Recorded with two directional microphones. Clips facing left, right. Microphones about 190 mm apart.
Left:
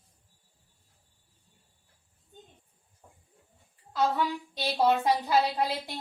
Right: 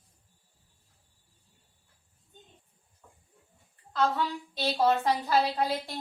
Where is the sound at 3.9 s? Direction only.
10° left (ahead or behind).